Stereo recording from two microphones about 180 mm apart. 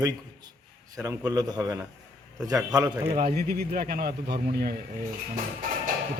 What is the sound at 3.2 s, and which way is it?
Speech, 60° right (ahead or behind).